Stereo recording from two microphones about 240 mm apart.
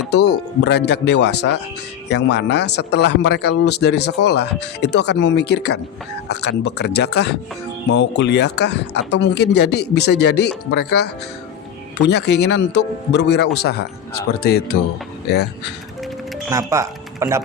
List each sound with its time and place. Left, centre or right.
0.1 s a man's voice: left
16.5 s speech: centre